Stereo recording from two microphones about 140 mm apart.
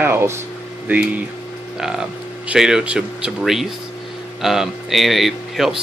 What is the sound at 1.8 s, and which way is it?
Speech, 5° right (ahead or behind).